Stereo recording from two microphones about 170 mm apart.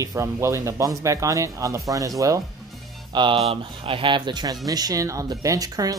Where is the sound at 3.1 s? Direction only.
30° right (ahead or behind).